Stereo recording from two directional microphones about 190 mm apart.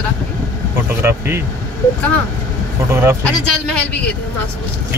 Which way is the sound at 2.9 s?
15° right (ahead or behind).